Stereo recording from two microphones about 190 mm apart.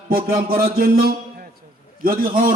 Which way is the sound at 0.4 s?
50° right (ahead or behind).